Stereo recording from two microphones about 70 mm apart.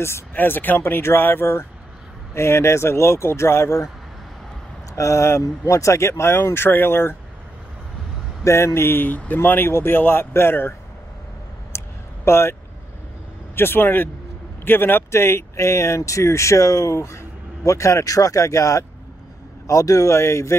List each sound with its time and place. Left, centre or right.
0.0 s speech: left
4.9 s speech: left
8.5 s speech: left
11.7 s a sound: left
12.3 s speech: left
13.6 s speech: left